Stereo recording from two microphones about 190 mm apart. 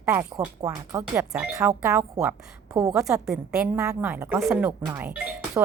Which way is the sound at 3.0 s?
5° right (ahead or behind).